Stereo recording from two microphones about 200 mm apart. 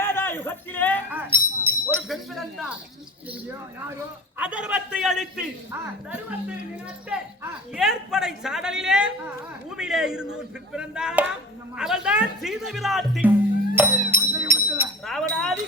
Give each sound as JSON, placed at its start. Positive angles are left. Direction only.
{"t": 0.0, "sound": "a man's voice", "side_deg": 10}
{"t": 1.1, "sound": "a sound", "side_deg": -10}
{"t": 2.0, "sound": "speech", "side_deg": 0}
{"t": 4.4, "sound": "speech", "side_deg": -5}
{"t": 7.1, "sound": "speech", "side_deg": -5}
{"t": 13.7, "sound": "music", "side_deg": -10}
{"t": 15.0, "sound": "speech", "side_deg": 0}